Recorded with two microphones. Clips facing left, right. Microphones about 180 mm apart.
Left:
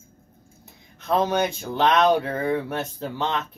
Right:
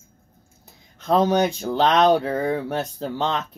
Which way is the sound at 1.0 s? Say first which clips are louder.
Right 3 dB; 35° right (ahead or behind).